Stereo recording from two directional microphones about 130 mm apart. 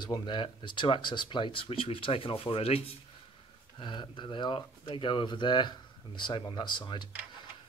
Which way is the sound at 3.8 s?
35° left (ahead or behind).